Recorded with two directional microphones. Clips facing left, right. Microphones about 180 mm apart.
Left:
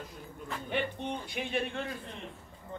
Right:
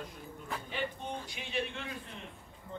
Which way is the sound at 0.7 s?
60° left (ahead or behind).